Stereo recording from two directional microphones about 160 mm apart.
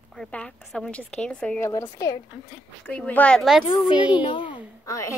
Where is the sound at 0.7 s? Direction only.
5° left (ahead or behind).